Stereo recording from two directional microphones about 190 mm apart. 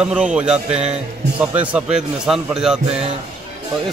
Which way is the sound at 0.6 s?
35° right (ahead or behind).